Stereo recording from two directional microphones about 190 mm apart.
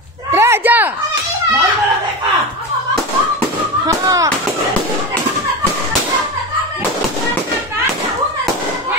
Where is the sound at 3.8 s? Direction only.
15° right (ahead or behind).